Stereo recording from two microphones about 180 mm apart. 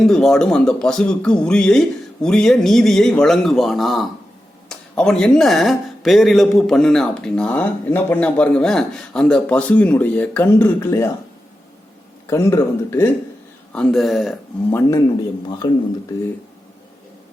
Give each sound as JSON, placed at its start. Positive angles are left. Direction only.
{"t": 0.0, "sound": "speech", "side_deg": 0}
{"t": 12.3, "sound": "speech", "side_deg": 15}
{"t": 13.7, "sound": "speech", "side_deg": 5}
{"t": 14.7, "sound": "a man's voice", "side_deg": 15}